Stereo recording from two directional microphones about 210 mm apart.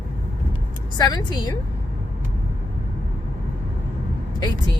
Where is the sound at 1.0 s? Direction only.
20° left (ahead or behind).